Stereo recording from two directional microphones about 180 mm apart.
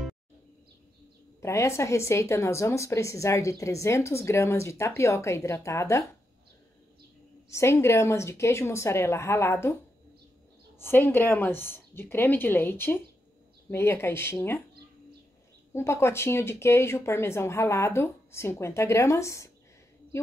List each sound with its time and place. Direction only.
1.4 s a woman's voice: 15° left (ahead or behind)
7.4 s a woman's voice: 15° left (ahead or behind)
10.8 s a woman's voice: 10° left (ahead or behind)
15.7 s a woman's voice: 15° left (ahead or behind)